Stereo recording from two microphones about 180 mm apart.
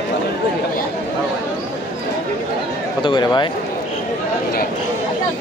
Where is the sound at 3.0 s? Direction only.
25° left (ahead or behind).